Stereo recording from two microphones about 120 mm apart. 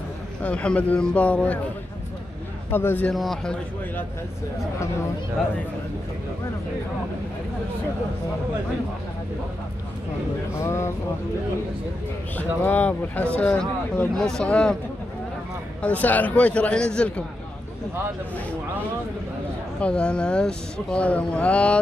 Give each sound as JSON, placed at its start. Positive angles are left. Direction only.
{"t": 0.4, "sound": "speech", "side_deg": 10}
{"t": 2.7, "sound": "speech", "side_deg": 20}
{"t": 3.1, "sound": "a man's voice", "side_deg": 5}
{"t": 10.5, "sound": "speech", "side_deg": 25}
{"t": 12.4, "sound": "speech", "side_deg": 15}
{"t": 15.8, "sound": "speech", "side_deg": 10}
{"t": 19.8, "sound": "speech", "side_deg": 10}